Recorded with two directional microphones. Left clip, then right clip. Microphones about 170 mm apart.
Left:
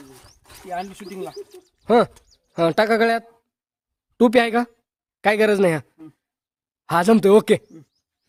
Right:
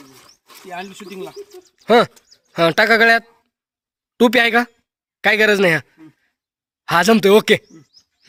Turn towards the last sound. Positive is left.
turn(degrees=10)  # may be behind; listen again after turning